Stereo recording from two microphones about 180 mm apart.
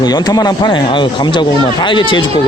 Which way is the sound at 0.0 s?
20° left (ahead or behind).